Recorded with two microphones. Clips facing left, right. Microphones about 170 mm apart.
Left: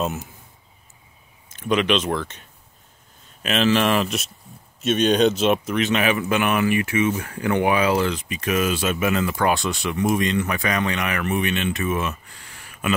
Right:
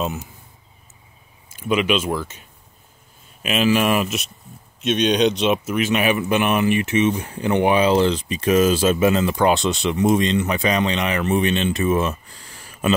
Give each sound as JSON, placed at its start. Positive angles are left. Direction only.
{"t": 0.0, "sound": "speech", "side_deg": 0}
{"t": 1.5, "sound": "speech", "side_deg": -5}
{"t": 3.4, "sound": "speech", "side_deg": -10}
{"t": 4.8, "sound": "speech", "side_deg": 5}